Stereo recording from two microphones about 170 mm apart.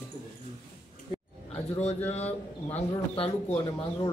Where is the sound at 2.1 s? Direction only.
40° left (ahead or behind).